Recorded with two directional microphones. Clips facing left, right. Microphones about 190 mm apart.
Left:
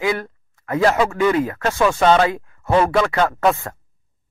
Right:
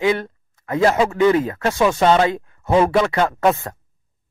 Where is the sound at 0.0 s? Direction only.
25° right (ahead or behind).